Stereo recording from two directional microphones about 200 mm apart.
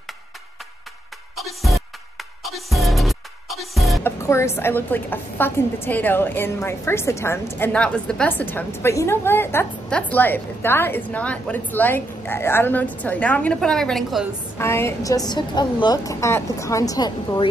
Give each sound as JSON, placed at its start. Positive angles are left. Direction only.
{"t": 1.3, "sound": "music", "side_deg": 0}
{"t": 4.0, "sound": "music", "side_deg": 15}
{"t": 4.6, "sound": "a woman's voice", "side_deg": 10}
{"t": 14.6, "sound": "a woman's voice", "side_deg": 10}